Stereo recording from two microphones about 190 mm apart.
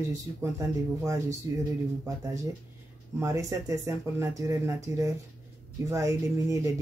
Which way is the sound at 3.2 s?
15° right (ahead or behind).